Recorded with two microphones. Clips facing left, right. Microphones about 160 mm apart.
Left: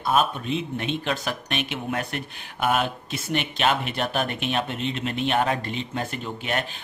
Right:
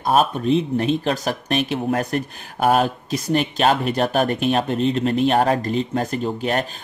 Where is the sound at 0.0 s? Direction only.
40° right (ahead or behind).